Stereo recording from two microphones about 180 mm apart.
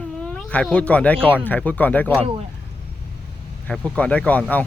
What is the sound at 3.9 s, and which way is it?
Speech, 5° left (ahead or behind).